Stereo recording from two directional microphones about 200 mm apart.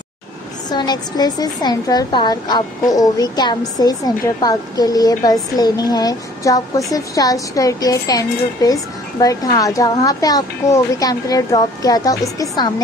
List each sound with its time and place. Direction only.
0.7 s a woman's voice: 20° left (ahead or behind)